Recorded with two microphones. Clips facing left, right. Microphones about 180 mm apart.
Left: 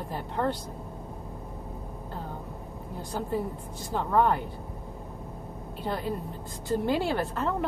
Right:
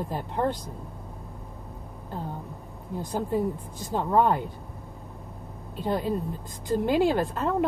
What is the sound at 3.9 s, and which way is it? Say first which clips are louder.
Speech: right 2 dB; 15° right (ahead or behind).